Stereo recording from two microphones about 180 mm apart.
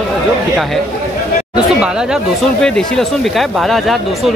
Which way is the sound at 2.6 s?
5° left (ahead or behind).